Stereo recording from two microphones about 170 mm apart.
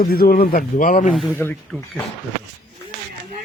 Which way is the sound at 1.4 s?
10° left (ahead or behind).